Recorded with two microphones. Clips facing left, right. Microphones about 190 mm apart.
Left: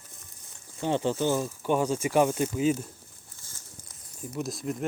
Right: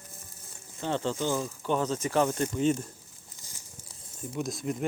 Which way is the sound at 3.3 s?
15° right (ahead or behind).